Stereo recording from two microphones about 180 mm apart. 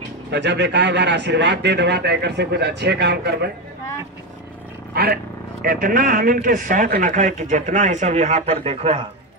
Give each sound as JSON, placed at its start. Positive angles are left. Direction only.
{"t": 0.3, "sound": "a man's voice", "side_deg": -75}
{"t": 4.9, "sound": "a man's voice", "side_deg": -55}